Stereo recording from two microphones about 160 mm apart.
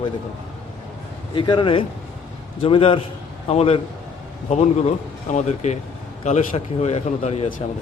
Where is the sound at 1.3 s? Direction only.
30° left (ahead or behind); by 7.6 s 45° left (ahead or behind).